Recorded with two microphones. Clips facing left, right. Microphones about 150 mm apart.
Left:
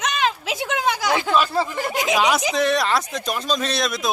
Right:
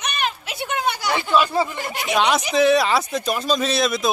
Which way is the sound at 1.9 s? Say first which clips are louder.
Left 2 dB; 90° left.